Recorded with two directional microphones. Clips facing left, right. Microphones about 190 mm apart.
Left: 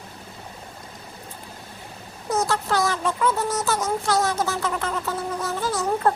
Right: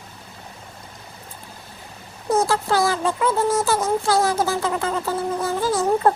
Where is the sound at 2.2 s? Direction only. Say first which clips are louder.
Right 4 dB; 30° right (ahead or behind).